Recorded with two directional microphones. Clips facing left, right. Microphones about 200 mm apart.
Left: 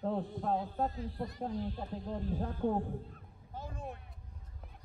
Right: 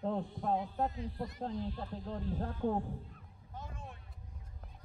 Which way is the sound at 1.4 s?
15° left (ahead or behind).